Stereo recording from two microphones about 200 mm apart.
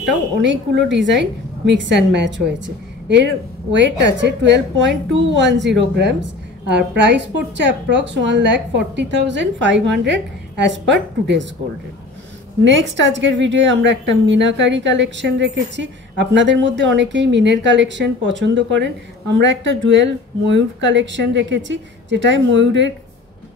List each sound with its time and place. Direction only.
0.8 s a woman's voice: 65° right (ahead or behind)
12.6 s a woman's voice: 65° right (ahead or behind)